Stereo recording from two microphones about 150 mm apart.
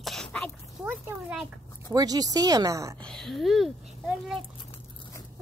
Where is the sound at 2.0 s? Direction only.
25° right (ahead or behind).